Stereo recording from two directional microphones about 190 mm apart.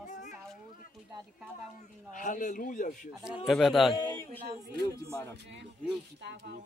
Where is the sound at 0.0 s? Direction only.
40° left (ahead or behind).